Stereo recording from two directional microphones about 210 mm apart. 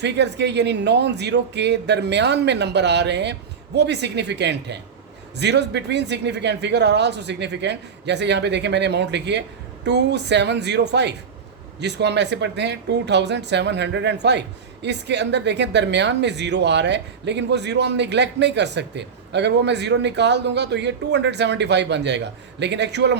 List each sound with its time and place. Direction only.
0.0 s speech: 55° right (ahead or behind)